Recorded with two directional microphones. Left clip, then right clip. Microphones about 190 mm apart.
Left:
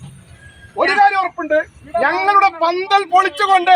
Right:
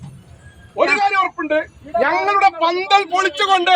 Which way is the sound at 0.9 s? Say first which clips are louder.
Left 3 dB; 40° right (ahead or behind).